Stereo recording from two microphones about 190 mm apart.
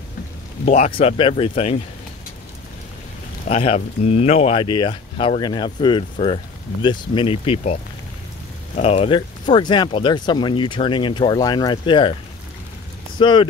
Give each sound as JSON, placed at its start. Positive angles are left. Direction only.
{"t": 0.7, "sound": "speech", "side_deg": 35}
{"t": 3.4, "sound": "speech", "side_deg": 35}
{"t": 13.2, "sound": "speech", "side_deg": 25}